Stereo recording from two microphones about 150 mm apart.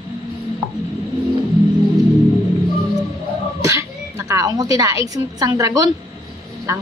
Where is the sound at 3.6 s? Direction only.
20° right (ahead or behind).